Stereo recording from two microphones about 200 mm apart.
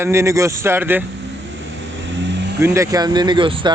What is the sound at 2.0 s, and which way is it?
Vehicle, 65° right (ahead or behind).